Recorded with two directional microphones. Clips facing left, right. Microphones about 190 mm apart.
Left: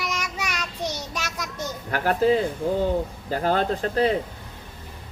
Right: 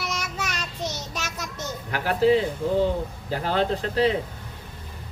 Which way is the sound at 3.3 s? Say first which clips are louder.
Left 1 dB; 45° left (ahead or behind).